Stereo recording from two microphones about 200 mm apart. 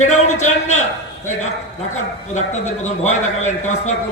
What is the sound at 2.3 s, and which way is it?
A man's voice, 35° left (ahead or behind).